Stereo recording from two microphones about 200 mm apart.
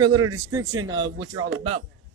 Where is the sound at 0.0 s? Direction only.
20° right (ahead or behind).